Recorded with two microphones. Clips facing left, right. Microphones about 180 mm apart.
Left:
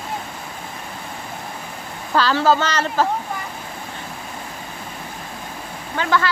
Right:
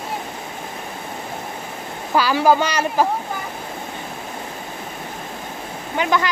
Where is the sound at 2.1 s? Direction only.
10° right (ahead or behind).